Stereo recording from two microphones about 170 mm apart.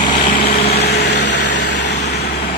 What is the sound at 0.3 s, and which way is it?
Vehicle, 45° left (ahead or behind).